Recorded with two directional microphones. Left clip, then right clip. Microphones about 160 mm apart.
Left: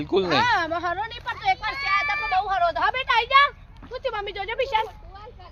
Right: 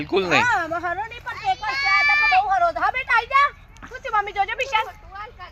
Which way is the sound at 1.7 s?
55° left (ahead or behind).